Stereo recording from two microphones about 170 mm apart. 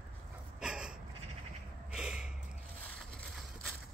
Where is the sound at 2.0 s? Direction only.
5° right (ahead or behind).